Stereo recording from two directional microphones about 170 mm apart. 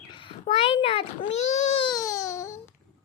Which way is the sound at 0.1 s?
30° left (ahead or behind).